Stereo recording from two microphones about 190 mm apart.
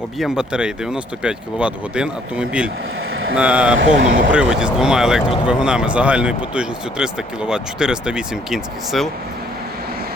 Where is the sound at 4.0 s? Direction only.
45° right (ahead or behind).